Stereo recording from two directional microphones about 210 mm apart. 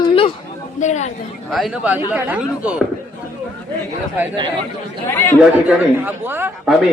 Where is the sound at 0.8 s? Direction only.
35° left (ahead or behind).